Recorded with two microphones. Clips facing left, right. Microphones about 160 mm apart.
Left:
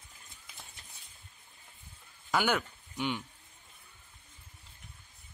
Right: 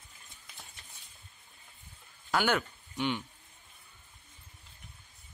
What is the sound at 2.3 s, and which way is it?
Speech, 5° left (ahead or behind).